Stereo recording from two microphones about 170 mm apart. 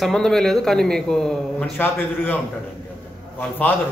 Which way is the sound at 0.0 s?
5° left (ahead or behind).